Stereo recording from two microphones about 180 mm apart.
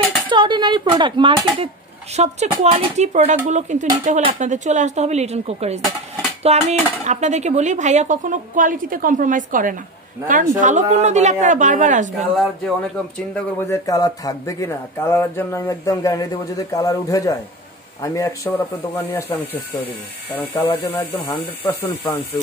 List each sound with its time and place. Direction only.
0.3 s speech: 25° right (ahead or behind)
2.1 s speech: 40° right (ahead or behind)
12.2 s speech: centre (ahead or behind)
13.3 s speech: 15° left (ahead or behind)
20.5 s speech: 15° left (ahead or behind)